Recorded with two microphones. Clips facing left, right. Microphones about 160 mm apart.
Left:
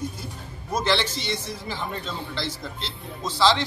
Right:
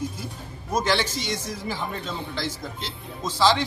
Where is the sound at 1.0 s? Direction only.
45° right (ahead or behind).